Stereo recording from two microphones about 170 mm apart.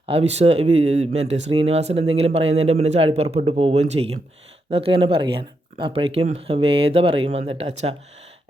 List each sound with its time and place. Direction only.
0.0 s speech: 35° right (ahead or behind)